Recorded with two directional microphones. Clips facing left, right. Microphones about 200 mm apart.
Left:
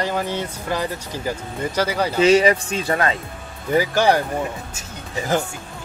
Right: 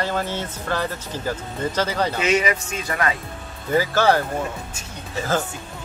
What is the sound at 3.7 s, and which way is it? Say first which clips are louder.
Speech: left 1 dB; 15° left (ahead or behind).